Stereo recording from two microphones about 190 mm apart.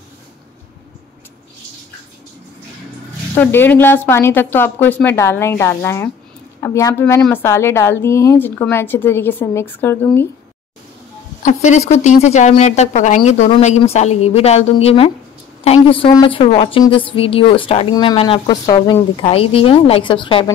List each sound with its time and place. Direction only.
3.3 s a woman's voice: 10° left (ahead or behind)
11.4 s a woman's voice: 40° left (ahead or behind)